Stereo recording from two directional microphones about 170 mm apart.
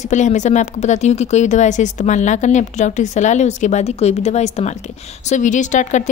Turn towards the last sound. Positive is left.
turn(degrees=45)  # may be behind; listen again after turning